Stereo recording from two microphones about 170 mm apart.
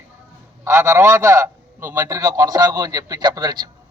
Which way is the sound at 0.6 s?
15° right (ahead or behind).